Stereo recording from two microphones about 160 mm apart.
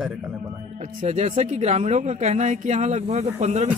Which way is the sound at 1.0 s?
45° right (ahead or behind).